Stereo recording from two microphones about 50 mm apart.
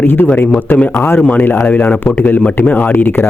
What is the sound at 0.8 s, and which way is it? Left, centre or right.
Speech, left.